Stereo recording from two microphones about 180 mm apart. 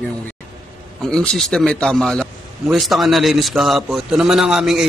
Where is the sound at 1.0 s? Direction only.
5° left (ahead or behind).